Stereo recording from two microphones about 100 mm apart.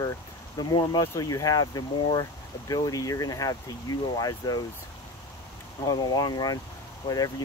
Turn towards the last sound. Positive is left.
turn(degrees=40)  # may be behind; listen again after turning